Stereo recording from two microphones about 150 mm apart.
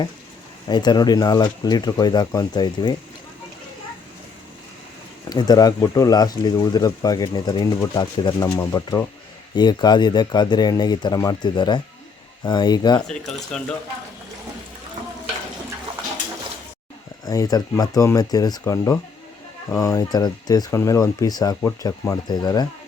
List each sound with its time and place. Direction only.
0.7 s speech: 30° left (ahead or behind)
5.3 s speech: 25° left (ahead or behind)
13.0 s speech: 5° left (ahead or behind)
17.2 s speech: 25° left (ahead or behind)